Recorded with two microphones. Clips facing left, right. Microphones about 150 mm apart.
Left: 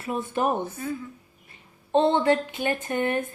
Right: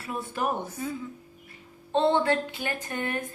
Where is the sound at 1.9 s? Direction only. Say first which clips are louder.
Left 3 dB; 15° left (ahead or behind).